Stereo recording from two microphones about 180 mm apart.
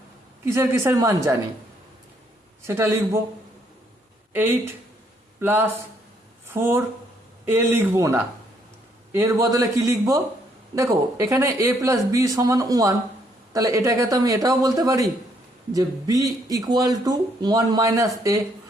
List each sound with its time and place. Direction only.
0.4 s speech: 15° right (ahead or behind)
2.6 s speech: 15° right (ahead or behind)
4.3 s speech: 10° right (ahead or behind)